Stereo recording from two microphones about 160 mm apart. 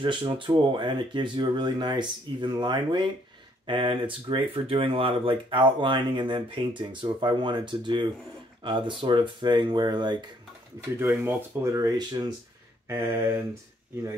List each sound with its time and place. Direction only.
0.0 s speech: 30° right (ahead or behind)
11.0 s speech: 15° right (ahead or behind)